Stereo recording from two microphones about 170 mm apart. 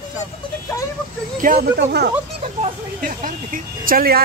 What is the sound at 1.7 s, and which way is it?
Speech, 75° right (ahead or behind).